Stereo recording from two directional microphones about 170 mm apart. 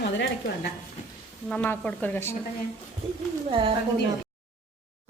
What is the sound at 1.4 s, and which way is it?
Speech, 10° left (ahead or behind).